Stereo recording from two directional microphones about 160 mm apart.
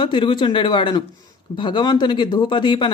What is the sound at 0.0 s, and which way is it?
Speech, 30° left (ahead or behind).